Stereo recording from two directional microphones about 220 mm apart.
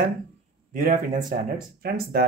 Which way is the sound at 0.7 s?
40° right (ahead or behind).